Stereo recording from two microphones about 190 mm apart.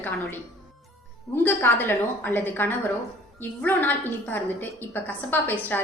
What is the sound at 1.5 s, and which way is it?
A woman's voice, 10° left (ahead or behind).